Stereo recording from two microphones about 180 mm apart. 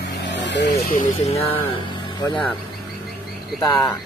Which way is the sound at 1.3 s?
35° left (ahead or behind).